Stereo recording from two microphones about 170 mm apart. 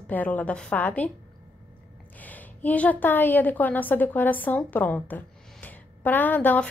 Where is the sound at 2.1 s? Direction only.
10° left (ahead or behind).